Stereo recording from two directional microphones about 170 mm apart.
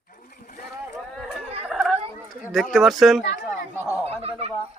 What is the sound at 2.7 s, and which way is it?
Speech, centre (ahead or behind).